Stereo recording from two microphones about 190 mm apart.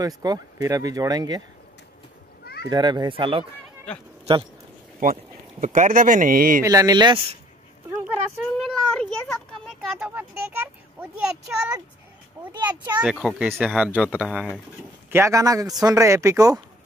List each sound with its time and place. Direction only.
0.0 s speech: 20° right (ahead or behind)
2.4 s children playing: 55° left (ahead or behind)
2.7 s speech: 20° right (ahead or behind)
5.1 s speech: 40° right (ahead or behind)
6.6 s speech: 15° right (ahead or behind)
8.5 s a sound: centre (ahead or behind)
10.0 s speech: 10° right (ahead or behind)
12.5 s speech: 20° right (ahead or behind)
13.0 s speech: centre (ahead or behind)
15.0 s speech: 15° right (ahead or behind)